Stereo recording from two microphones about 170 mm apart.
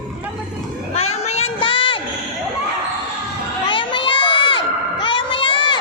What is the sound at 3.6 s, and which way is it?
Crowd, 30° left (ahead or behind).